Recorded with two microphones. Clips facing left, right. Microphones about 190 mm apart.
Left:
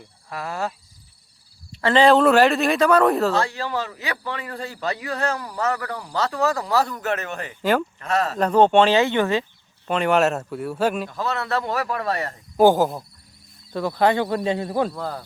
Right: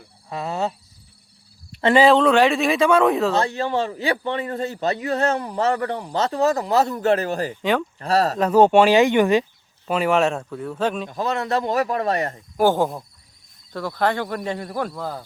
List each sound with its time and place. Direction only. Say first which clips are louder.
0.3 s a man's voice: right 3 dB; 20° right (ahead or behind)
1.8 s speech: right 2 dB; 10° right (ahead or behind)
2.0 s speech: left 3 dB; 5° left (ahead or behind)
3.3 s a man's voice: right 3 dB; 20° right (ahead or behind)
7.6 s speech: left 3 dB; centre (ahead or behind)
7.9 s speech: right 3 dB; 35° right (ahead or behind)
8.4 s speech: right 1 dB; 5° right (ahead or behind)
9.8 s speech: even; 5° right (ahead or behind)
11.1 s a man's voice: right 2 dB; 15° right (ahead or behind)
12.5 s speech: left 3 dB; 15° left (ahead or behind)
12.8 s speech: left 1 dB; 5° left (ahead or behind)
13.7 s speech: left 3 dB; 20° left (ahead or behind)